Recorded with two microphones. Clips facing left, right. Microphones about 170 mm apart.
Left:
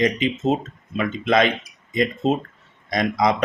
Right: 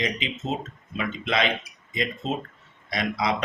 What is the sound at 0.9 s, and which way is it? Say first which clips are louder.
Speech: left 7 dB; 45° left (ahead or behind).